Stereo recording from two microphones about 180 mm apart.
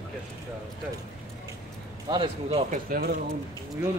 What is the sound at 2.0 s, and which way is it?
Speech, 30° right (ahead or behind).